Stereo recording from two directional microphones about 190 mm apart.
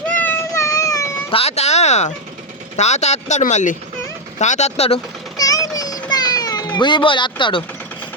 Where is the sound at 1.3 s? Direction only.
35° left (ahead or behind).